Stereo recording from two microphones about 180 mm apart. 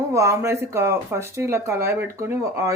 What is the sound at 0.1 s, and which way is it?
Speech, 15° right (ahead or behind).